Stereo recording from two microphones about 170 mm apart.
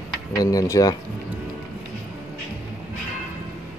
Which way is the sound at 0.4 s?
20° left (ahead or behind).